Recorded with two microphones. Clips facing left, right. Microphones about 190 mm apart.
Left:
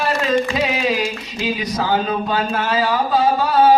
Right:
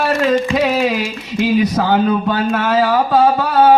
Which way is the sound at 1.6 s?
60° right (ahead or behind).